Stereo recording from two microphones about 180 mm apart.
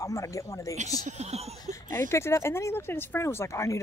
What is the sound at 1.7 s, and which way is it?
Speech, 15° left (ahead or behind).